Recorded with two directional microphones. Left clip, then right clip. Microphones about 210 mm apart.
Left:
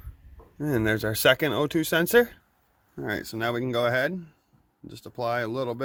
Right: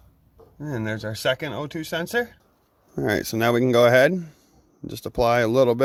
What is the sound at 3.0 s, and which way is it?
Speech, 45° right (ahead or behind).